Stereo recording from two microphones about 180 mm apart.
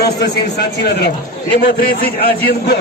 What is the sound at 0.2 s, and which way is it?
Speech, 70° left (ahead or behind).